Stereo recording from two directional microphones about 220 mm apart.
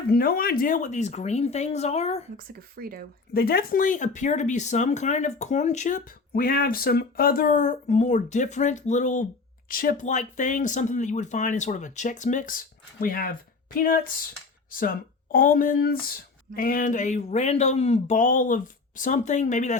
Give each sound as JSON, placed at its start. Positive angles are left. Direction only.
{"t": 0.1, "sound": "speech", "side_deg": 40}
{"t": 2.4, "sound": "speech", "side_deg": -40}
{"t": 3.3, "sound": "speech", "side_deg": 45}